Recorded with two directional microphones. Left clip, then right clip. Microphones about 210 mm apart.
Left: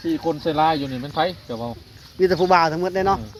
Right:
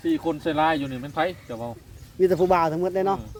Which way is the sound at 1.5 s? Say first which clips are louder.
Left 4 dB; 35° left (ahead or behind).